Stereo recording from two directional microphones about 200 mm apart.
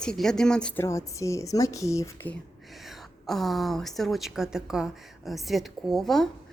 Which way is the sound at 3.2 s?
Centre (ahead or behind).